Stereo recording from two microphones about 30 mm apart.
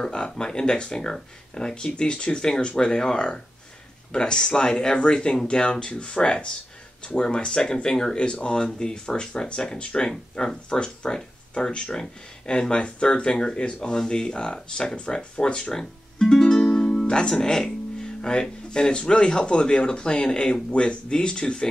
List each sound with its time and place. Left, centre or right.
0.0 s speech: left
8.2 s speech: left
10.0 s speech: centre
16.2 s music: left
17.3 s speech: centre